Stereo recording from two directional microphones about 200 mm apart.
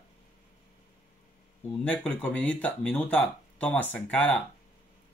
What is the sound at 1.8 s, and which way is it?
Speech, 5° left (ahead or behind).